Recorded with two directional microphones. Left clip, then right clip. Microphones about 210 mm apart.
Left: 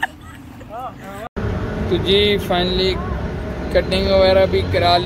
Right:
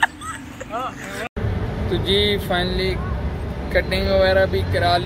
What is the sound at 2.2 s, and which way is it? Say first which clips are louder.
Speech: left 3 dB; 25° right (ahead or behind).